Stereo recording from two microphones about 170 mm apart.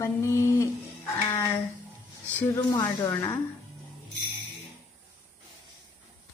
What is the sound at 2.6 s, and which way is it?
Speech, 20° left (ahead or behind).